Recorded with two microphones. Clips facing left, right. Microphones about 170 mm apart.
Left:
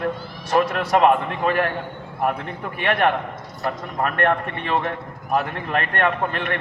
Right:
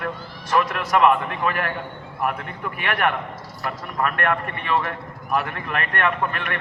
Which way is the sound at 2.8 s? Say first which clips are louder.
Left 4 dB; 35° left (ahead or behind).